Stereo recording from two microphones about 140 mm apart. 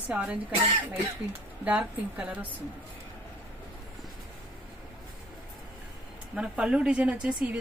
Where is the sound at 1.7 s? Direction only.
10° right (ahead or behind).